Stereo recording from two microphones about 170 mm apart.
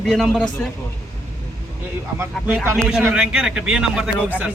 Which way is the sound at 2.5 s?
10° right (ahead or behind).